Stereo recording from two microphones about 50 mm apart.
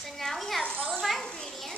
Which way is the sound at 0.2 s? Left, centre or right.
Centre.